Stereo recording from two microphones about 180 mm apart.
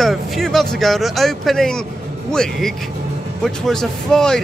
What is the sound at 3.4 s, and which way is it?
Speech, centre (ahead or behind).